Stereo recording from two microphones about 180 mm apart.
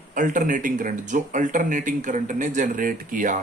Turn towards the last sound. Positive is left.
turn(degrees=-45)  # may be behind; listen again after turning